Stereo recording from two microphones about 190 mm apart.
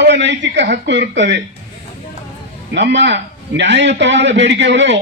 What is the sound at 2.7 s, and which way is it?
Speech, 70° right (ahead or behind).